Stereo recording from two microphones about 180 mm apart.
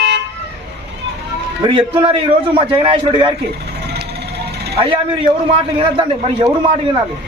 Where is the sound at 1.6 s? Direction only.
30° right (ahead or behind).